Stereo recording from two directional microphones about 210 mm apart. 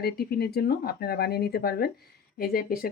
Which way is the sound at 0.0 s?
50° left (ahead or behind).